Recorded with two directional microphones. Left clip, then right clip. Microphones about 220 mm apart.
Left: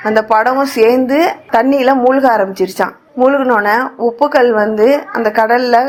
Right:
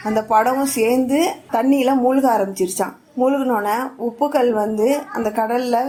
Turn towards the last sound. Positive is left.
turn(degrees=20)  # may be behind; listen again after turning